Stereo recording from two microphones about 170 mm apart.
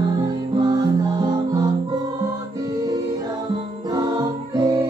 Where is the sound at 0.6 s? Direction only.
25° right (ahead or behind).